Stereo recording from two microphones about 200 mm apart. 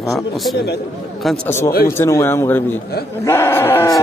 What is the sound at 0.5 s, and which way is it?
Speech, 55° left (ahead or behind).